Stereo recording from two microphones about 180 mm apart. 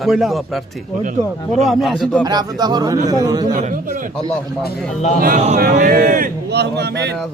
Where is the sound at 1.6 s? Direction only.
Centre (ahead or behind).